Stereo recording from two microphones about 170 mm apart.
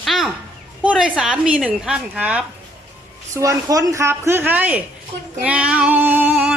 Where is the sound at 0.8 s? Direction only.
5° right (ahead or behind).